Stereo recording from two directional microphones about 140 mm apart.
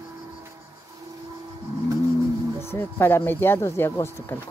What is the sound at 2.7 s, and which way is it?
Speech, 15° left (ahead or behind).